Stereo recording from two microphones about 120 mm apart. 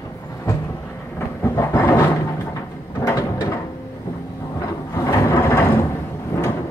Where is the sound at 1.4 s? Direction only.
20° left (ahead or behind).